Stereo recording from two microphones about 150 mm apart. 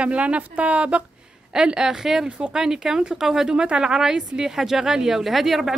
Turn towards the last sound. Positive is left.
turn(degrees=0)  # may be behind; listen again after turning